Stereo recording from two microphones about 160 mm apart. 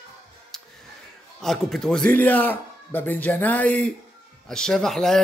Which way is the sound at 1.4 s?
Centre (ahead or behind).